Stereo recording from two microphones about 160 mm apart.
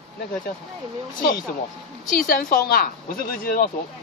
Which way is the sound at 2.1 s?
60° left (ahead or behind).